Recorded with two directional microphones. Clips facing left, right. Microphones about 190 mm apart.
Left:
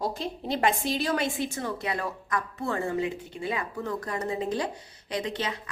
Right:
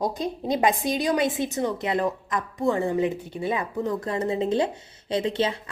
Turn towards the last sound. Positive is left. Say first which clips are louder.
# right 7 dB
turn(degrees=-30)  # may be behind; listen again after turning